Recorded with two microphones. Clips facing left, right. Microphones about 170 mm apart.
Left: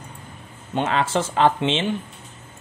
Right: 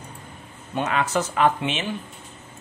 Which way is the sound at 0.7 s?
30° left (ahead or behind).